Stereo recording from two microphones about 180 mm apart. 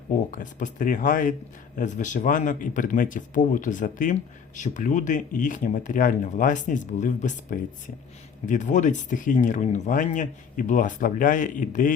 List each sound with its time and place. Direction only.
0.3 s a man's voice: 45° left (ahead or behind)